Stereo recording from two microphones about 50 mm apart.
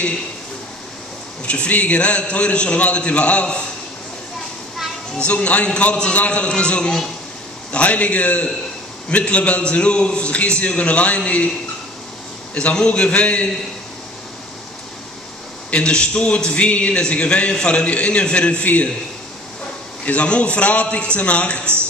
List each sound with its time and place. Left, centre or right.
1.4 s a man's voice: left
5.2 s a man's voice: left
12.5 s a man's voice: left
15.7 s a man's voice: centre
20.1 s a man's voice: left